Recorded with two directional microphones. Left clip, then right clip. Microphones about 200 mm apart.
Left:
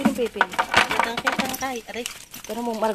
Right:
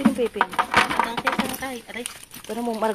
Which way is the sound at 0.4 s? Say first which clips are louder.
Left 1 dB; 10° left (ahead or behind).